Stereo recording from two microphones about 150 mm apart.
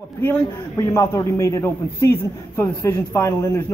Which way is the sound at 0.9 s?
20° left (ahead or behind).